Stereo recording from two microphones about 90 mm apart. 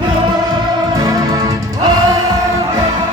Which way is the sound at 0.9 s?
45° right (ahead or behind).